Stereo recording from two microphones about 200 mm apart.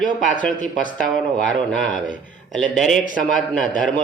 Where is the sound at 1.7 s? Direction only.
40° left (ahead or behind).